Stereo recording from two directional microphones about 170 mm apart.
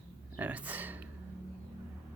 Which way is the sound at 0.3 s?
10° right (ahead or behind).